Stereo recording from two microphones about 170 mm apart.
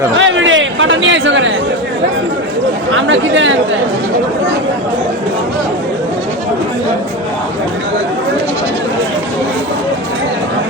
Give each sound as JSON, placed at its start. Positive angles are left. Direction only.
{"t": 0.2, "sound": "chatter", "side_deg": -90}
{"t": 2.9, "sound": "speech", "side_deg": -90}